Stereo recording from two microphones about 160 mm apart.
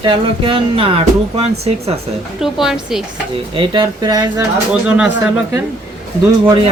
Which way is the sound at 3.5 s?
30° right (ahead or behind).